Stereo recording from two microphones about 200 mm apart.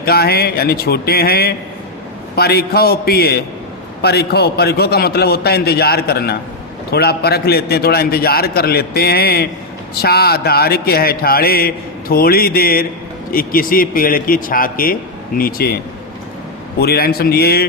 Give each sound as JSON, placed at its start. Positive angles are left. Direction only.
{"t": 0.0, "sound": "mantra", "side_deg": 50}
{"t": 16.8, "sound": "mantra", "side_deg": 50}